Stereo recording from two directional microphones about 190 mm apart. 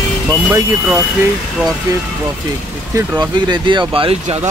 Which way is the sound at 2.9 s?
15° right (ahead or behind).